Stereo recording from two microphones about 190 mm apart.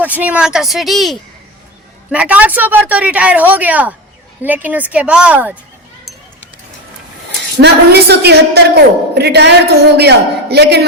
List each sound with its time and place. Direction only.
0.0 s speech: 10° right (ahead or behind)
7.6 s a woman's voice: 60° right (ahead or behind)